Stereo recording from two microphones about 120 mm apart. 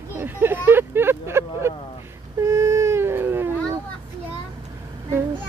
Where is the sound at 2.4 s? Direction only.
25° right (ahead or behind).